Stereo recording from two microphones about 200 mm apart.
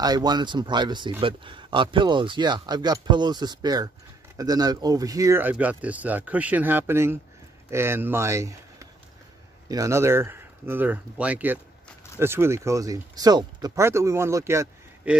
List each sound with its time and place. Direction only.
0.0 s speech: 20° right (ahead or behind)
9.7 s speech: 15° right (ahead or behind)